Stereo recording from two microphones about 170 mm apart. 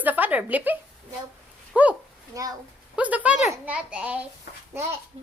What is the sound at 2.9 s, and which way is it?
A woman's voice, 10° right (ahead or behind).